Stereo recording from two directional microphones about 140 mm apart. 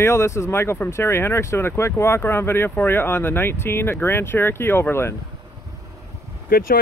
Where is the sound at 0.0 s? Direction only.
20° left (ahead or behind).